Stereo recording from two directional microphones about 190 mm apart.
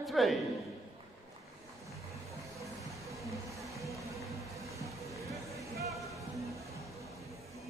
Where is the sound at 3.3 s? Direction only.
15° right (ahead or behind).